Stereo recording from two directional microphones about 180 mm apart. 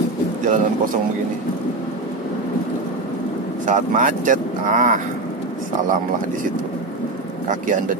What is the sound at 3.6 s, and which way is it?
Speech, 45° right (ahead or behind).